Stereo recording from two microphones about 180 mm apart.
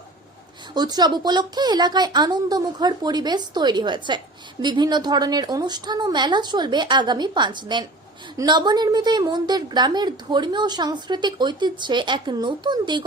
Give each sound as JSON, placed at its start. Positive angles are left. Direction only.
{"t": 0.7, "sound": "a woman's voice", "side_deg": -25}